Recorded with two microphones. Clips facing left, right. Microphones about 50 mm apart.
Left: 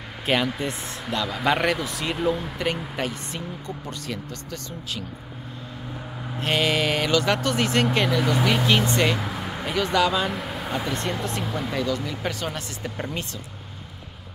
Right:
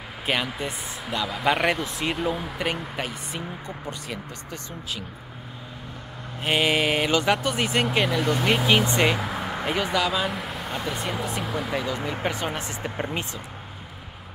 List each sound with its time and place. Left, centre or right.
0.3 s speech: centre
6.4 s speech: centre
8.5 s speech: centre
9.3 s a sound: centre
9.8 s speech: centre
11.7 s speech: right